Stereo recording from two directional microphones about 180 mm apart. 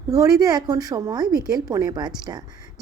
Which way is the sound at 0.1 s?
20° right (ahead or behind).